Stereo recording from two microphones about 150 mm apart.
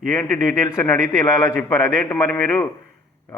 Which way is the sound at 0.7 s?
20° left (ahead or behind).